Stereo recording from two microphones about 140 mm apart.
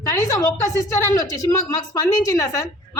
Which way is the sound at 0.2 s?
25° left (ahead or behind).